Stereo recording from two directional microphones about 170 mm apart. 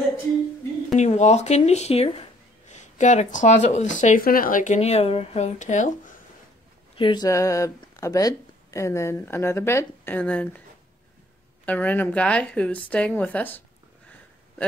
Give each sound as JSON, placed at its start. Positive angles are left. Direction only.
{"t": 0.9, "sound": "speech", "side_deg": 40}
{"t": 7.0, "sound": "speech", "side_deg": 25}
{"t": 11.6, "sound": "speech", "side_deg": 10}
{"t": 12.9, "sound": "a sound", "side_deg": 10}